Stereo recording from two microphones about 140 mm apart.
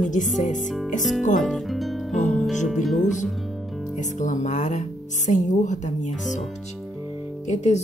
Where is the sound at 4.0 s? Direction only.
60° left (ahead or behind).